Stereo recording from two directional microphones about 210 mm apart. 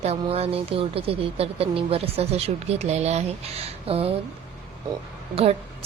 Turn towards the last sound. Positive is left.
turn(degrees=-30)  # may be behind; listen again after turning